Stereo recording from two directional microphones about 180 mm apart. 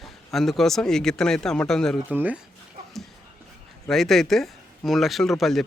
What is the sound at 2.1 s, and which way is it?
Speech, 10° right (ahead or behind).